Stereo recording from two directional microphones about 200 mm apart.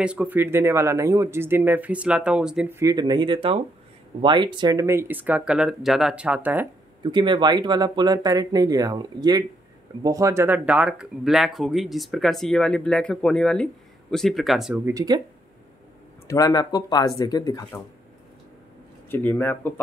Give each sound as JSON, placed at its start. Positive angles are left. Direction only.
{"t": 0.0, "sound": "speech", "side_deg": -5}
{"t": 7.0, "sound": "speech", "side_deg": -25}
{"t": 14.9, "sound": "speech", "side_deg": -20}
{"t": 16.3, "sound": "speech", "side_deg": 20}
{"t": 19.0, "sound": "speech", "side_deg": 10}